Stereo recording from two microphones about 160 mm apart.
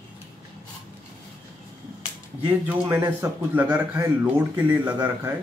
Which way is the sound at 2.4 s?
10° right (ahead or behind).